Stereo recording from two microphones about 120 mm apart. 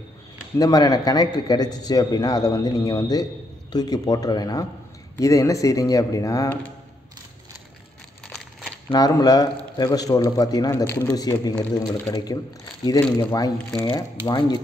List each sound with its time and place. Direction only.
0.6 s a man's voice: 30° left (ahead or behind)
8.9 s a man's voice: 30° left (ahead or behind)